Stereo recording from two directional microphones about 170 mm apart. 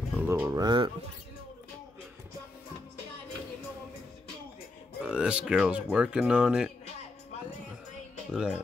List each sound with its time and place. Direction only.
0.1 s speech: 10° right (ahead or behind)
5.0 s speech: 5° right (ahead or behind)
8.3 s speech: 5° right (ahead or behind)